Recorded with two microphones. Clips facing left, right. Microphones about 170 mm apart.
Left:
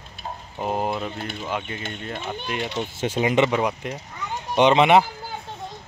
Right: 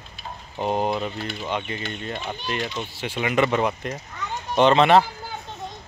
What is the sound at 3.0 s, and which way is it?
Speech, 45° left (ahead or behind).